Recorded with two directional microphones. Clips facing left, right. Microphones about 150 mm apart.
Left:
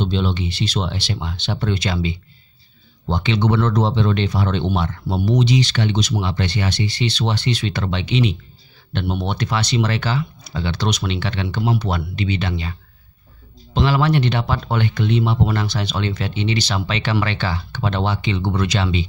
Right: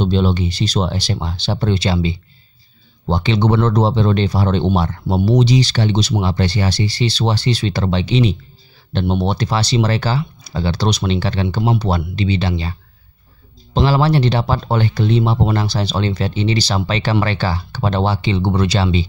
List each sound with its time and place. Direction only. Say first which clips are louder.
0.0 s speech: right 5 dB; 40° right (ahead or behind)
13.7 s speech: right 3 dB; 35° right (ahead or behind)